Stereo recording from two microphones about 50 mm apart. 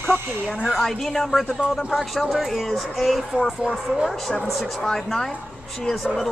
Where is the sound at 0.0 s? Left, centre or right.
Left.